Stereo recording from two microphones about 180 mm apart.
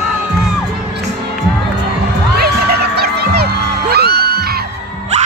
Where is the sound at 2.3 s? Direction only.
60° right (ahead or behind).